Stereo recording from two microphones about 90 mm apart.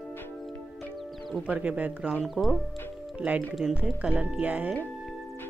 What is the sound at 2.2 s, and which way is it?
Speech, centre (ahead or behind).